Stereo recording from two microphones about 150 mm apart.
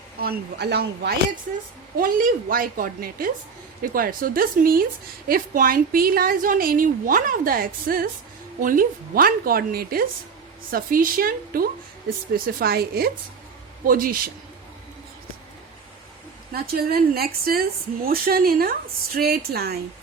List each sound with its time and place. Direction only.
0.2 s speech: 90° right
2.0 s a woman's voice: 70° right (ahead or behind)
12.5 s speech: 90° right
13.8 s a woman's voice: 70° right (ahead or behind)
16.5 s a woman's voice: 90° right